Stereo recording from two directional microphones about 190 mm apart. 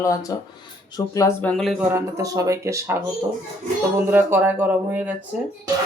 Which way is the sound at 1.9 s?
15° right (ahead or behind).